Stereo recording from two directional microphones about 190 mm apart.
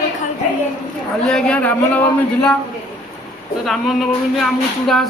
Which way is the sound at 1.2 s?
5° left (ahead or behind).